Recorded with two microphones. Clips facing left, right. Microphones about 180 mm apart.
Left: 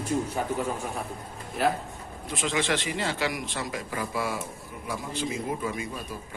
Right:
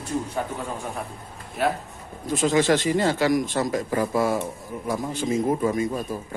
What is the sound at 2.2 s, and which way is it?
A man's voice, 45° right (ahead or behind).